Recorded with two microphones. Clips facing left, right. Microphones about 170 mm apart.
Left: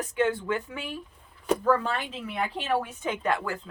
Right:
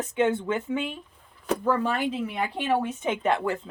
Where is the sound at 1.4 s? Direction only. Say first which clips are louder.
Left 1 dB; 10° right (ahead or behind).